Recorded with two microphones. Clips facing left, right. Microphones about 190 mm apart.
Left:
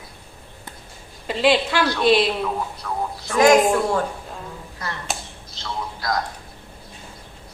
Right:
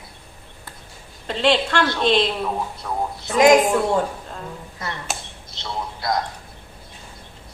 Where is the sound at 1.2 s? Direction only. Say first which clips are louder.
Left 1 dB; 5° left (ahead or behind).